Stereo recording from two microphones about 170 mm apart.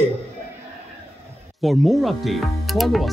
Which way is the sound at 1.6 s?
Centre (ahead or behind).